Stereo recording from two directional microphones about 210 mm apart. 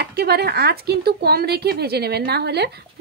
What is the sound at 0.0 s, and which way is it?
Speech, 50° right (ahead or behind).